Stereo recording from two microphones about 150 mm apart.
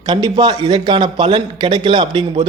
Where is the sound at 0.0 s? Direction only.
30° right (ahead or behind).